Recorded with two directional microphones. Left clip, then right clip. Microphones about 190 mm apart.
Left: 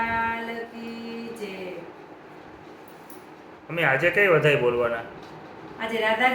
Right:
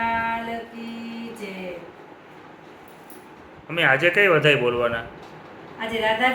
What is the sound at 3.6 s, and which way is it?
A man's voice, 25° right (ahead or behind).